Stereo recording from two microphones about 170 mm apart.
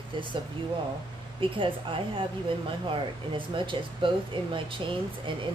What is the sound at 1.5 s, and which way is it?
Speech, 30° right (ahead or behind).